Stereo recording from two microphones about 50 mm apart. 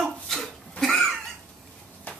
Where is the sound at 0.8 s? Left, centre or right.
Centre.